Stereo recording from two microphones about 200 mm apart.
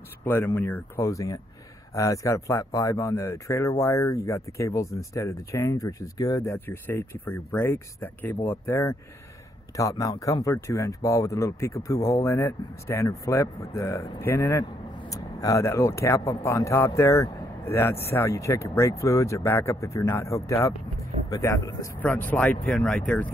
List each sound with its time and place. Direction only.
0.2 s speech: 10° left (ahead or behind)